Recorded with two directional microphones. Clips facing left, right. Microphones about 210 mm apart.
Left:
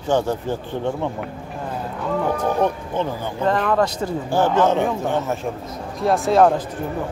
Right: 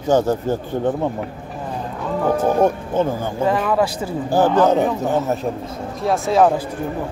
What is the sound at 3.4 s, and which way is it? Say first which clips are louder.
Speech: even; 5° right (ahead or behind).